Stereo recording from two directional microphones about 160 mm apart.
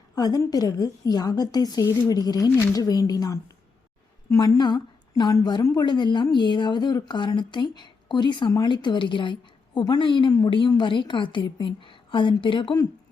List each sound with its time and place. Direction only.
0.2 s a woman's voice: 25° left (ahead or behind)